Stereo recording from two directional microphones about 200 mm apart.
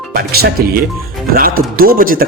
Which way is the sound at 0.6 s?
45° right (ahead or behind).